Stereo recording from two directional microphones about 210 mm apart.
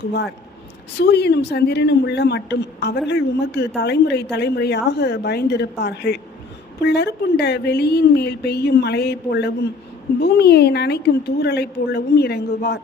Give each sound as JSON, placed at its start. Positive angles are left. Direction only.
{"t": 0.9, "sound": "a woman's voice", "side_deg": 50}